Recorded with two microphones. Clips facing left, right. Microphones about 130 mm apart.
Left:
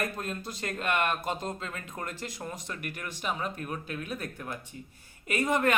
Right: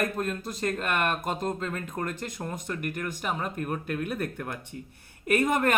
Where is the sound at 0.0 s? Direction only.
50° right (ahead or behind).